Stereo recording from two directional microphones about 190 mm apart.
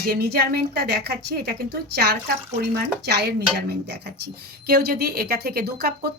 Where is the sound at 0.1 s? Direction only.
55° right (ahead or behind).